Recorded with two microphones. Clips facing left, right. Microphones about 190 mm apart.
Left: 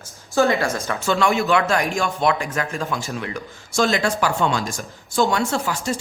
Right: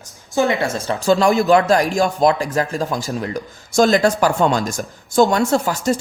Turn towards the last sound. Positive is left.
turn(degrees=-45)  # may be behind; listen again after turning